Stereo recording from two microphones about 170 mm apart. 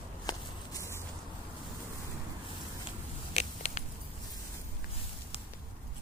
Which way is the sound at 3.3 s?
45° left (ahead or behind).